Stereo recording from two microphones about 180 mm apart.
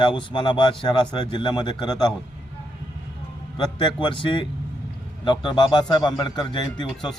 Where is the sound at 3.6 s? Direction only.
25° left (ahead or behind).